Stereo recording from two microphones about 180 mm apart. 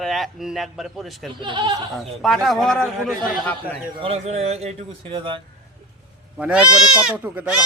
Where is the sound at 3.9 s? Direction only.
30° right (ahead or behind).